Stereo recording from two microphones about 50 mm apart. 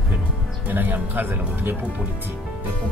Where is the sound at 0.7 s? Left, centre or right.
Right.